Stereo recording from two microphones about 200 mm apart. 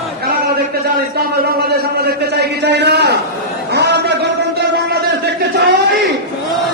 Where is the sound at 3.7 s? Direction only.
55° right (ahead or behind).